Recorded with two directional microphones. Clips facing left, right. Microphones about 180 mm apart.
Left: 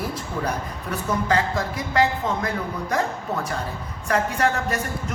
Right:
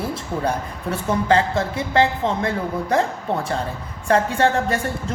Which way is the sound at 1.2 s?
30° right (ahead or behind).